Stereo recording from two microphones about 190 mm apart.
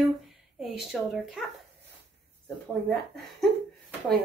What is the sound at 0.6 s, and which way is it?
Speech, centre (ahead or behind).